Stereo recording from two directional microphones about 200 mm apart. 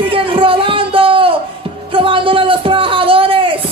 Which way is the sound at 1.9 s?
25° right (ahead or behind).